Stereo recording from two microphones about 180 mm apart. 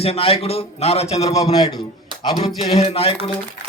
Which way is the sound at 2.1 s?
25° right (ahead or behind).